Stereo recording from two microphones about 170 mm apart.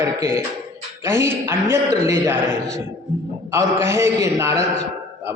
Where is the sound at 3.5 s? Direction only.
15° right (ahead or behind).